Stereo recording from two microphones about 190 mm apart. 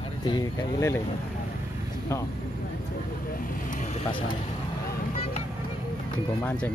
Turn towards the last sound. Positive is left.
turn(degrees=5)  # may be behind; listen again after turning